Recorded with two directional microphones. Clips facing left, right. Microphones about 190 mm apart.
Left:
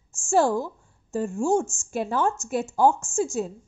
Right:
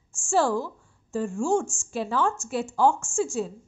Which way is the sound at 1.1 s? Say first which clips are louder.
Left 1 dB; 40° left (ahead or behind).